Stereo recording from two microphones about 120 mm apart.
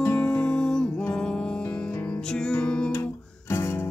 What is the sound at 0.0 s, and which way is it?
Music, 15° left (ahead or behind).